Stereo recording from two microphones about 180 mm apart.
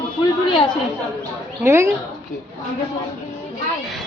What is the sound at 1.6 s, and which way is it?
Speech, 15° right (ahead or behind).